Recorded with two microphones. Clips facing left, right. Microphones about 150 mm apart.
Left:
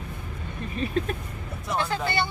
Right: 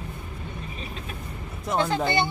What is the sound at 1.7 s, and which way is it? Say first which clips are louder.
Speech: right 3 dB; 20° right (ahead or behind).